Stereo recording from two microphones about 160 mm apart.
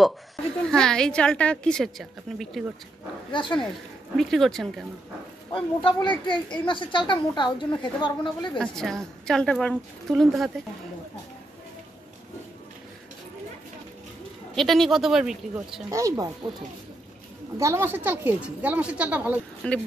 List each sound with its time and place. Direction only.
0.7 s a woman's voice: 5° left (ahead or behind)
3.3 s speech: 30° left (ahead or behind)
4.2 s a woman's voice: centre (ahead or behind)
5.5 s a woman's voice: 30° left (ahead or behind)
8.5 s a woman's voice: 5° left (ahead or behind)
14.5 s a woman's voice: centre (ahead or behind)
15.9 s speech: 20° right (ahead or behind)
17.6 s speech: 15° right (ahead or behind)
19.6 s speech: 5° left (ahead or behind)